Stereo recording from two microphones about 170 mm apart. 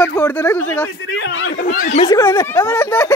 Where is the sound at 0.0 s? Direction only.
15° left (ahead or behind).